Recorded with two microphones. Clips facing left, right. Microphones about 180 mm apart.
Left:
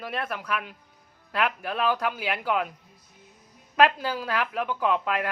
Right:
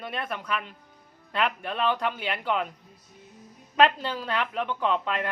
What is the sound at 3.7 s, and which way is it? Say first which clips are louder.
A woman's voice: left 1 dB; 5° left (ahead or behind).